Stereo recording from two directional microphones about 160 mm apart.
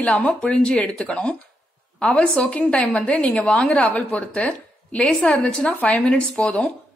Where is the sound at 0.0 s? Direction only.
10° left (ahead or behind).